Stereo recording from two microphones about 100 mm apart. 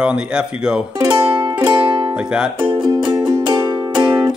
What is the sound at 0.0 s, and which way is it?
Speech, 10° right (ahead or behind).